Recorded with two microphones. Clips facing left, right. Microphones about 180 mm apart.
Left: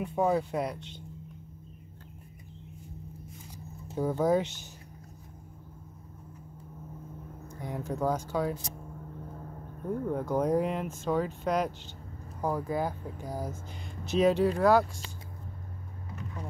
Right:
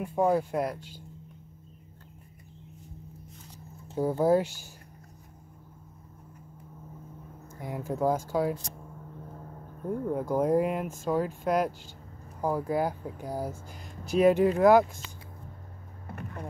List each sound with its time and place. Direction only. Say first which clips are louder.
0.0 s speech: right 2 dB; 5° right (ahead or behind)
3.9 s speech: right 2 dB; 10° right (ahead or behind)
7.6 s speech: right 3 dB; 10° right (ahead or behind)
9.8 s speech: right 1 dB; 5° right (ahead or behind)
16.1 s vehicle: right 2 dB; 60° right (ahead or behind)